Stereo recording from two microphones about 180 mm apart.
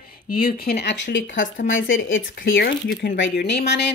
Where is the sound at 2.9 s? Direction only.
90° left; by 3.8 s 70° left (ahead or behind).